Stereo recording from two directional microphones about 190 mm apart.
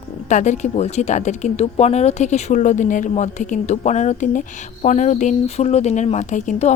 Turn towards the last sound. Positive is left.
turn(degrees=40)  # may be behind; listen again after turning